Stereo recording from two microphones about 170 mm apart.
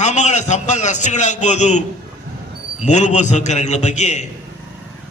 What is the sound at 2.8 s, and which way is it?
A man's voice, 45° left (ahead or behind).